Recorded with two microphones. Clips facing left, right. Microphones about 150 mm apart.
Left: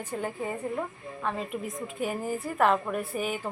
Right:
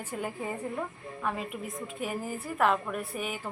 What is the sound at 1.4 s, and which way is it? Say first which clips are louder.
A woman's voice: left 3 dB; centre (ahead or behind).